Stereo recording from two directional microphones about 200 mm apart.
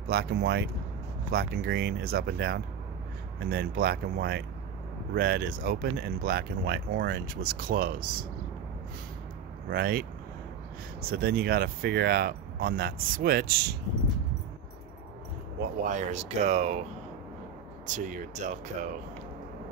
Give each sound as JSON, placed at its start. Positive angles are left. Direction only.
{"t": 0.1, "sound": "speech", "side_deg": -50}
{"t": 9.7, "sound": "speech", "side_deg": -45}
{"t": 15.8, "sound": "speech", "side_deg": -40}
{"t": 17.8, "sound": "speech", "side_deg": -40}